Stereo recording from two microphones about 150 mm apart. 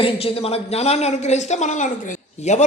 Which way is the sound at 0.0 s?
40° left (ahead or behind).